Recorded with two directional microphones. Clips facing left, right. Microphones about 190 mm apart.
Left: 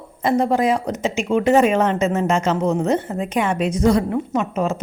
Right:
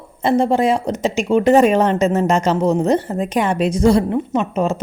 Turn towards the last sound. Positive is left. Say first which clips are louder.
# right 2 dB
turn(degrees=-30)  # may be behind; listen again after turning